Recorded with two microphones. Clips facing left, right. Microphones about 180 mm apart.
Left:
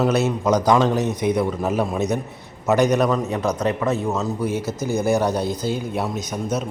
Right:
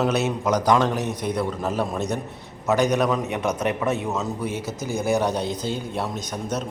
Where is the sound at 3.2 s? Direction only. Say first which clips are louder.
Left 2 dB; 20° right (ahead or behind).